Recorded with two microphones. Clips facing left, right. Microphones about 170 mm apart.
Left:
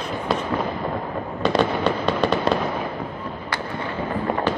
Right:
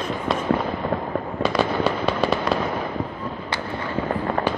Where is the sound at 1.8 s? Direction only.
5° right (ahead or behind).